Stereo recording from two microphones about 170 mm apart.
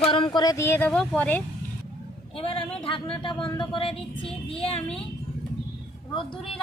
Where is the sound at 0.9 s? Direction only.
5° left (ahead or behind).